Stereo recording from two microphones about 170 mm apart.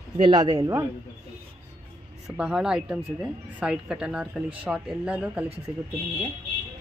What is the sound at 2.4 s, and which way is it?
Speech, 5° right (ahead or behind).